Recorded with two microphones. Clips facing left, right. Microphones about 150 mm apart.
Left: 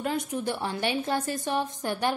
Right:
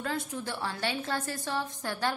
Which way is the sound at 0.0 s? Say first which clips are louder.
Left 5 dB; 15° left (ahead or behind).